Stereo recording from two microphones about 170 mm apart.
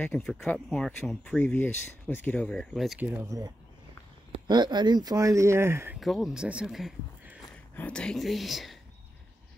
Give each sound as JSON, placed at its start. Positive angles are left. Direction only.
{"t": 0.0, "sound": "speech", "side_deg": 0}
{"t": 3.1, "sound": "speech", "side_deg": -20}
{"t": 5.9, "sound": "speech", "side_deg": 0}
{"t": 7.5, "sound": "speech", "side_deg": 10}